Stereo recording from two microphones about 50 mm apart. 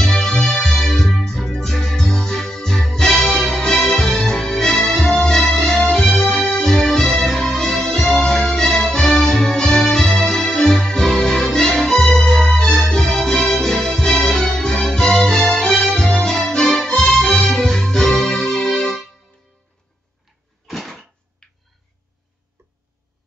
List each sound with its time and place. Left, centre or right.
0.0 s music: centre
20.6 s a sound: centre
21.4 s tick-tock: centre